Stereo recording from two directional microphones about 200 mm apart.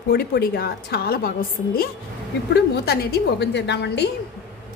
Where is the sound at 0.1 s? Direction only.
50° left (ahead or behind).